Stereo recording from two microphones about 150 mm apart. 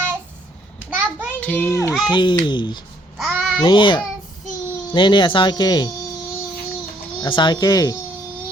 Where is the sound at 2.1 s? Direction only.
30° left (ahead or behind).